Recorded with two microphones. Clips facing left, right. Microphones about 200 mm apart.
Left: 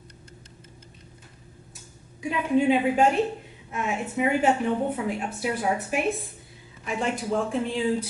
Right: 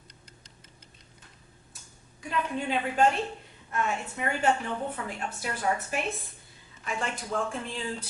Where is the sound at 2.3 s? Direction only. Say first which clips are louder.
Left 8 dB; 5° left (ahead or behind).